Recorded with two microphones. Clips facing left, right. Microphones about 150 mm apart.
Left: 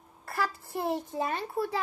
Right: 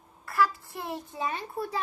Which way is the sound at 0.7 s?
30° left (ahead or behind).